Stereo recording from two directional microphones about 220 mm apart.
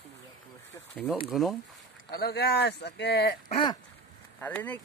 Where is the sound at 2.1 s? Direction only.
45° left (ahead or behind).